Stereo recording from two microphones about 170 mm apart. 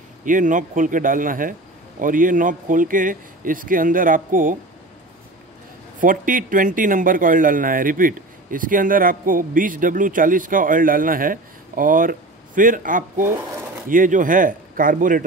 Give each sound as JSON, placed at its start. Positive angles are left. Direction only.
{"t": 0.2, "sound": "a man's voice", "side_deg": -50}
{"t": 5.9, "sound": "a man's voice", "side_deg": -55}
{"t": 13.3, "sound": "a sound", "side_deg": -15}
{"t": 13.8, "sound": "a man's voice", "side_deg": -50}